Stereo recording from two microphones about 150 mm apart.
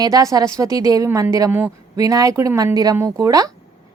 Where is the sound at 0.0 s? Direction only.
25° right (ahead or behind).